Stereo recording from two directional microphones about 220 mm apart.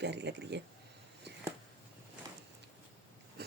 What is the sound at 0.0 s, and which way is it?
Speech, 50° right (ahead or behind).